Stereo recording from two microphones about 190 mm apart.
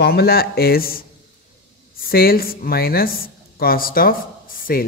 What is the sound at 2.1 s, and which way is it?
Speech, 50° left (ahead or behind).